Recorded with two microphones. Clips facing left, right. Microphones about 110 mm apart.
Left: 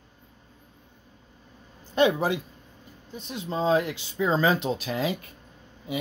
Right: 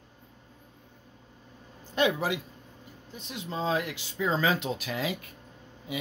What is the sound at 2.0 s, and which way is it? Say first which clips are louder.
Speech: left 4 dB; 30° left (ahead or behind).